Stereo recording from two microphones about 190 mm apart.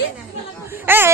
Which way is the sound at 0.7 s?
10° right (ahead or behind).